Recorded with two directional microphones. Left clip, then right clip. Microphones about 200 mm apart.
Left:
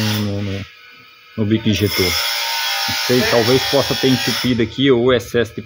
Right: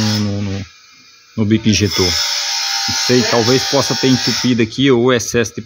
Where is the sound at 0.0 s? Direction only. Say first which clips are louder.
Right 2 dB; 45° right (ahead or behind).